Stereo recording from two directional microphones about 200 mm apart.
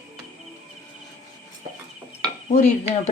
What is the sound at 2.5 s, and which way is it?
Speech, 35° left (ahead or behind).